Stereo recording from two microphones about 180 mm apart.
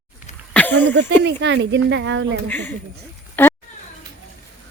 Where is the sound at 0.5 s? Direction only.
10° left (ahead or behind).